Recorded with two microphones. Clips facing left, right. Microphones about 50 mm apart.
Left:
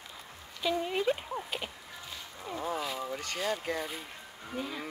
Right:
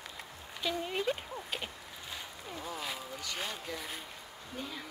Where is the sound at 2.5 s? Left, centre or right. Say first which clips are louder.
Left 6 dB; left.